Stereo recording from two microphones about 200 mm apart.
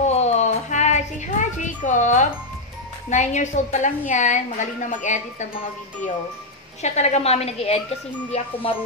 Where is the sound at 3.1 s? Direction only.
35° left (ahead or behind).